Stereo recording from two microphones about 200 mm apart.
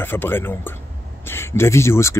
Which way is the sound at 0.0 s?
10° left (ahead or behind).